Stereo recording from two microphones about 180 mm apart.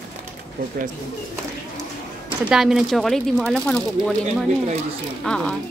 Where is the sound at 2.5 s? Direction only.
Centre (ahead or behind).